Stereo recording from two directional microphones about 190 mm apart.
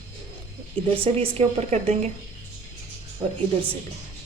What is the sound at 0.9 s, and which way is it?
A woman's voice, 30° right (ahead or behind).